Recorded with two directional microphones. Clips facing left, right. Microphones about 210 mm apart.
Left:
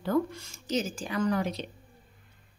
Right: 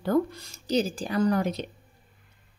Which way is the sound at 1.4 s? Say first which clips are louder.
Right 3 dB; 50° right (ahead or behind).